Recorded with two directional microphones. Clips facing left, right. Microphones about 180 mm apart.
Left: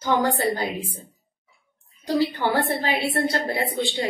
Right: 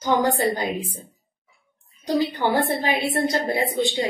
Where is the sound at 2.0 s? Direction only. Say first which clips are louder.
Even; 15° right (ahead or behind).